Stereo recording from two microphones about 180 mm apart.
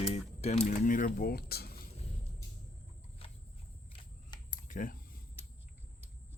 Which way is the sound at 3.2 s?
30° left (ahead or behind).